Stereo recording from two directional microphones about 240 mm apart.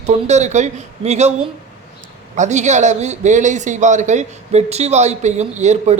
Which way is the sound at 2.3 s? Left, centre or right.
Right.